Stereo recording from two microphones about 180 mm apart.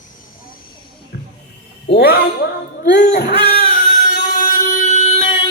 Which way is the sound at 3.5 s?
50° left (ahead or behind).